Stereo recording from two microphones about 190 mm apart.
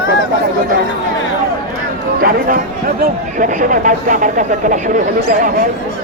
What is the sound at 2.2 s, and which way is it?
Speech, 45° right (ahead or behind).